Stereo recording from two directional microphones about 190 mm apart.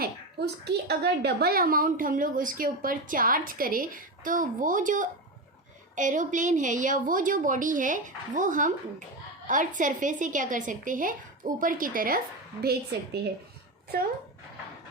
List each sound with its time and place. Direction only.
0.0 s a woman's voice: 60° right (ahead or behind)